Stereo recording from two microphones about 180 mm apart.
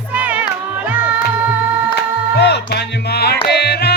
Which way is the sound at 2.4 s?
65° left (ahead or behind).